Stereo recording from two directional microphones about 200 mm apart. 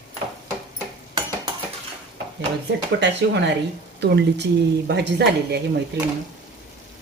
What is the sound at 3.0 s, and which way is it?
Speech, 60° right (ahead or behind).